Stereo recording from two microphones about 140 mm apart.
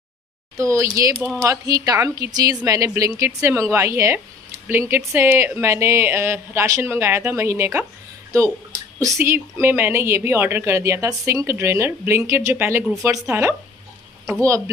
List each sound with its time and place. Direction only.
0.6 s speech: 20° right (ahead or behind)